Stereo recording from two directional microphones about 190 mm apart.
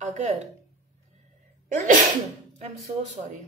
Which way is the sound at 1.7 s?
45° right (ahead or behind).